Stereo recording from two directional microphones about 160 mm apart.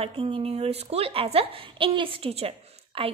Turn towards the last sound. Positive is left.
turn(degrees=-35)  # may be behind; listen again after turning